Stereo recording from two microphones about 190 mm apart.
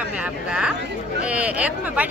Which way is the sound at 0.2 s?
5° right (ahead or behind).